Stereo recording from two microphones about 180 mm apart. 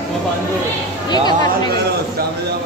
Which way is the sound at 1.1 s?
25° left (ahead or behind).